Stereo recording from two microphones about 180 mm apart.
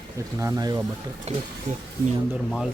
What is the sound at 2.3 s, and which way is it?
Speech, centre (ahead or behind).